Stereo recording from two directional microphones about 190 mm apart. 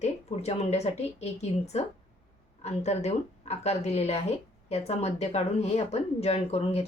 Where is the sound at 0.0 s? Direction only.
35° left (ahead or behind).